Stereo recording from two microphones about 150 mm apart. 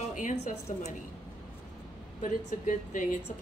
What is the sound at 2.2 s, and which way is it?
Speech, 60° left (ahead or behind).